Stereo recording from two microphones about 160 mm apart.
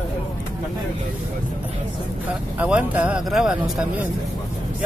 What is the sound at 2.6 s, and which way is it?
Speech, 10° right (ahead or behind).